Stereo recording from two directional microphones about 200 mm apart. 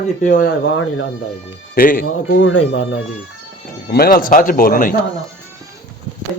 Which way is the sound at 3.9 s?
50° left (ahead or behind).